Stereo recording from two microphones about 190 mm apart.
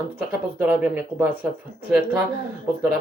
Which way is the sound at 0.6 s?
10° right (ahead or behind).